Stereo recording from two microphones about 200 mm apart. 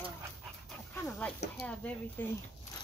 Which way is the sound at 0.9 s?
10° left (ahead or behind).